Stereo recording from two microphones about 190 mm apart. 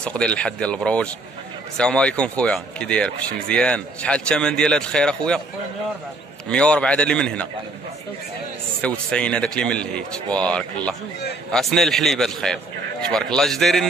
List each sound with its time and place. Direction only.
0.0 s speech: 5° left (ahead or behind)
6.5 s speech: 5° left (ahead or behind)
8.8 s speech: 5° left (ahead or behind)